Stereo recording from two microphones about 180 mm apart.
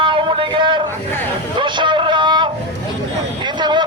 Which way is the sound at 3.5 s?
25° right (ahead or behind).